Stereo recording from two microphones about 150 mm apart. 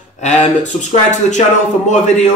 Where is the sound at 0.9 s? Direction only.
55° left (ahead or behind).